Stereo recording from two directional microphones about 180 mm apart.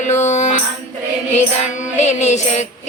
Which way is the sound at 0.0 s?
40° left (ahead or behind).